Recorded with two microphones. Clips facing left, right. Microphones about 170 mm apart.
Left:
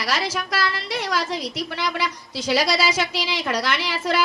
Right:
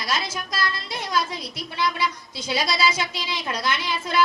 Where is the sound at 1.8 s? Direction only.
80° left.